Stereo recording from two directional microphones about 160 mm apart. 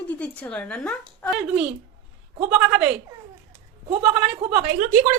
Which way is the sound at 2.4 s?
10° right (ahead or behind).